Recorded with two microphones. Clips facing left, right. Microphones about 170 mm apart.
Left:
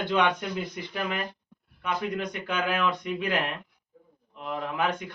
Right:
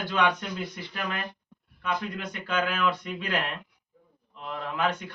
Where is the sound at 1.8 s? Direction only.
15° left (ahead or behind).